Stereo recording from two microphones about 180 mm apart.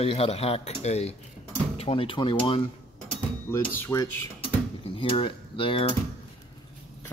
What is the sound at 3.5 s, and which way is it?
Speech, 15° left (ahead or behind).